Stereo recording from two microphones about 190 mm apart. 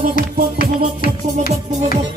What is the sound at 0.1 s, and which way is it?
Music, 45° left (ahead or behind).